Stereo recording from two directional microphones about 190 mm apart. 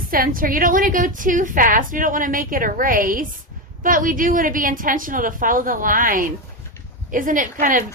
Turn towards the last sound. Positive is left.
turn(degrees=-45)  # may be behind; listen again after turning